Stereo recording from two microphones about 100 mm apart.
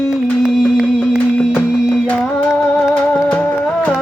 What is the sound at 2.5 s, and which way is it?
Music, 5° right (ahead or behind).